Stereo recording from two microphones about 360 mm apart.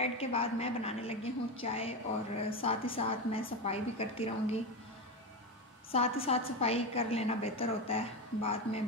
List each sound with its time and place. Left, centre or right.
0.0 s a woman's voice: centre
5.9 s a woman's voice: centre